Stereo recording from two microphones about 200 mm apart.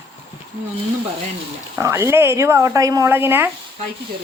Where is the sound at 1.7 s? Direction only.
10° right (ahead or behind).